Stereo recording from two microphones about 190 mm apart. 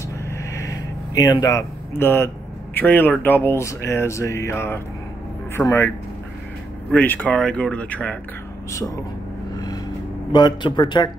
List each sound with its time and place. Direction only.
0.5 s speech: 15° left (ahead or behind)
10.3 s a man's voice: 25° left (ahead or behind)